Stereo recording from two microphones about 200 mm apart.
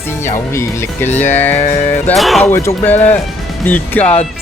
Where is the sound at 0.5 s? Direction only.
10° left (ahead or behind).